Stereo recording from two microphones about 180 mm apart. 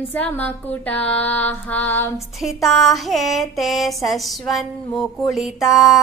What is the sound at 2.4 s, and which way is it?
Female singing, centre (ahead or behind).